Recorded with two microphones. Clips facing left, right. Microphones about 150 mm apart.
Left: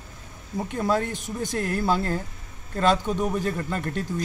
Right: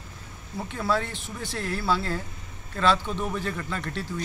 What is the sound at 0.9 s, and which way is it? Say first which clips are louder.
Speech: left 1 dB; 45° left (ahead or behind).